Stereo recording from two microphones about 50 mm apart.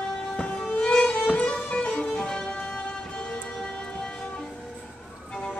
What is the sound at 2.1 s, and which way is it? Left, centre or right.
Music, centre.